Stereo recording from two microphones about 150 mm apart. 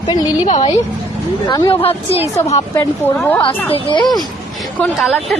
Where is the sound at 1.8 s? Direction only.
40° left (ahead or behind).